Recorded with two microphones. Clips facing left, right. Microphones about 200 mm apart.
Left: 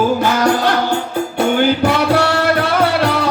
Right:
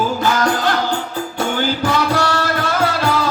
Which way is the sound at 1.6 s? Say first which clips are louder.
Left 3 dB; 60° left (ahead or behind).